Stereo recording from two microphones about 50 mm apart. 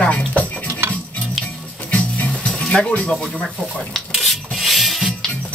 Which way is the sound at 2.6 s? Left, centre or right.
Centre.